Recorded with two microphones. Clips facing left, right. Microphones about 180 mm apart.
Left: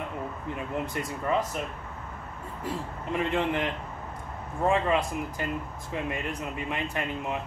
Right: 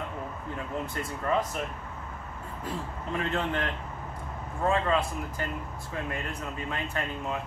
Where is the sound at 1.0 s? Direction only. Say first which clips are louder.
Left 2 dB; 20° left (ahead or behind).